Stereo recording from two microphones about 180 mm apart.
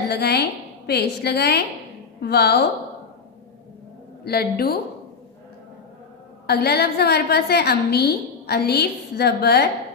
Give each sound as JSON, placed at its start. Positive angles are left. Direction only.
{"t": 0.1, "sound": "a woman's voice", "side_deg": 65}
{"t": 4.2, "sound": "a woman's voice", "side_deg": 60}
{"t": 6.4, "sound": "a woman's voice", "side_deg": 60}